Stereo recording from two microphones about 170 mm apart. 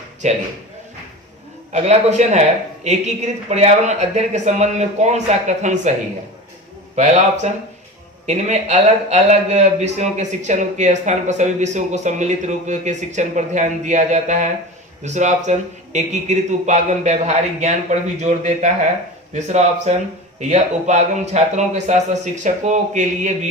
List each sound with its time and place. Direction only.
0.2 s speech: 45° right (ahead or behind)
1.7 s speech: 40° right (ahead or behind)
6.9 s speech: 45° right (ahead or behind)